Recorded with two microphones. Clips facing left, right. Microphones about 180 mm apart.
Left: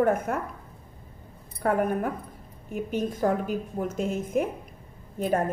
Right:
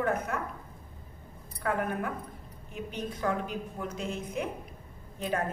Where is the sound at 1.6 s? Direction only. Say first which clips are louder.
Left 6 dB; 45° left (ahead or behind).